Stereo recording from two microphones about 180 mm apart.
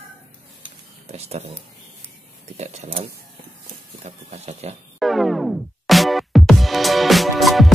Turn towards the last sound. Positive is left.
turn(degrees=0)  # may be behind; listen again after turning